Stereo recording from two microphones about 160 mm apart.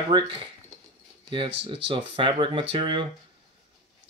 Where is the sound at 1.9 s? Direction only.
30° right (ahead or behind).